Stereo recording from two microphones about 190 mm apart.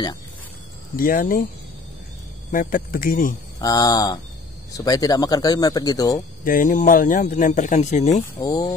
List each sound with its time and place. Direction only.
0.9 s speech: 50° left (ahead or behind)
2.5 s speech: 45° left (ahead or behind)
3.6 s speech: 20° left (ahead or behind)
6.4 s speech: 45° left (ahead or behind)
8.4 s speech: 20° left (ahead or behind)